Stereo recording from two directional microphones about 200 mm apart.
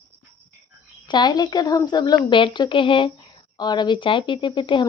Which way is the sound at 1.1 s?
20° left (ahead or behind).